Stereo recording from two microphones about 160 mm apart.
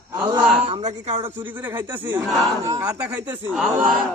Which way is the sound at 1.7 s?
10° right (ahead or behind).